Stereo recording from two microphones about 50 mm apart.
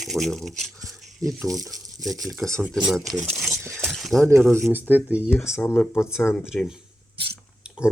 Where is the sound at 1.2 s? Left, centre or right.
Right.